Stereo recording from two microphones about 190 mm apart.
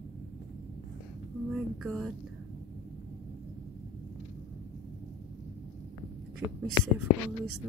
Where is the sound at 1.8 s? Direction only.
Centre (ahead or behind).